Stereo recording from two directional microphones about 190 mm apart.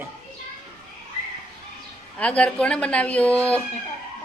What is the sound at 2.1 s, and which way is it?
Speech, 5° left (ahead or behind).